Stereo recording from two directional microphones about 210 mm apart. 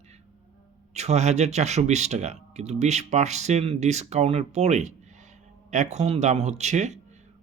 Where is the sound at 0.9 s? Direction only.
30° right (ahead or behind).